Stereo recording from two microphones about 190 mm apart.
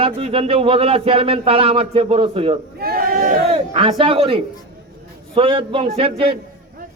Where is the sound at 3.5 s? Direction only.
30° right (ahead or behind).